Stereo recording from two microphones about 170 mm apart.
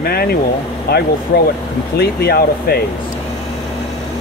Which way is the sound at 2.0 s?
65° left (ahead or behind).